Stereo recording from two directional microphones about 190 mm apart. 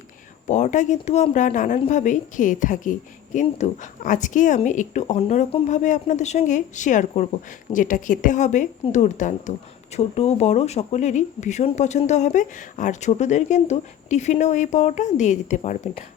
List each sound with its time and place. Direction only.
0.4 s a woman's voice: 40° left (ahead or behind)